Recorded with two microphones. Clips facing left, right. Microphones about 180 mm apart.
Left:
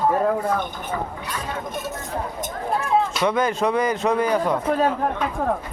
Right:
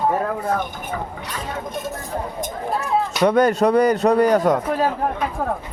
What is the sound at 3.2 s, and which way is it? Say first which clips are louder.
Speech: right 5 dB; 40° right (ahead or behind).